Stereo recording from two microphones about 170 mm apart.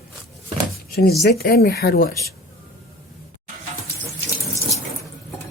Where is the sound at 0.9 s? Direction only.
65° left (ahead or behind).